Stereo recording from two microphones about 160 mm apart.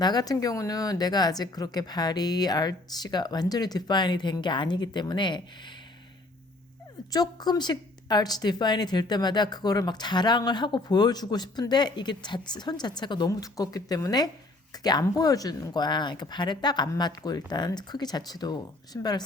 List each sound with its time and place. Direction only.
0.0 s speech: 25° left (ahead or behind)
7.1 s speech: 25° left (ahead or behind)